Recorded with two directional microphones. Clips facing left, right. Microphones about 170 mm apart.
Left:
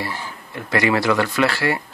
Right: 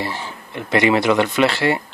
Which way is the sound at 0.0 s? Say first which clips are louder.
Right 2 dB; 25° right (ahead or behind).